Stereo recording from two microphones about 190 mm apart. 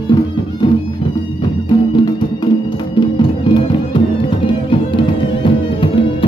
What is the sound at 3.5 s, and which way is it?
Music, 25° left (ahead or behind).